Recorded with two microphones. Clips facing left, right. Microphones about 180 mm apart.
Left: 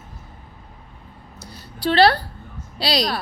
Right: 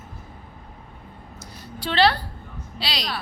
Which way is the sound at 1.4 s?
35° left (ahead or behind).